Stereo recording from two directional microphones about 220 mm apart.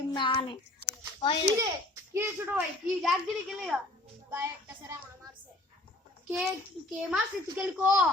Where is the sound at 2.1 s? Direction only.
10° right (ahead or behind).